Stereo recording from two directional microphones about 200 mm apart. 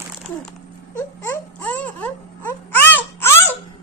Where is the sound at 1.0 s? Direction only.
10° left (ahead or behind).